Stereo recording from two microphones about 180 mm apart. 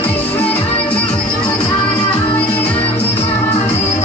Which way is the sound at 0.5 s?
30° left (ahead or behind).